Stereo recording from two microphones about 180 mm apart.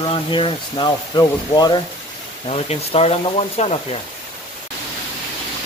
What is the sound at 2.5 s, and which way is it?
A man's voice, 35° left (ahead or behind).